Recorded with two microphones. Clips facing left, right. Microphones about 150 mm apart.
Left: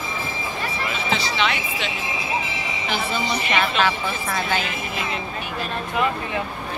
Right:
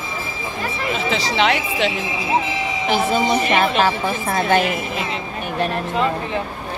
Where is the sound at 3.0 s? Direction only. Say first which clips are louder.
Right 8 dB; 45° right (ahead or behind).